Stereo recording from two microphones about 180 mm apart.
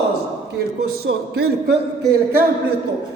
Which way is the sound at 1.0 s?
65° right (ahead or behind).